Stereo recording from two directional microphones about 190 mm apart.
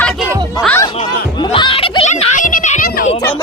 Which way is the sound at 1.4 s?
25° left (ahead or behind).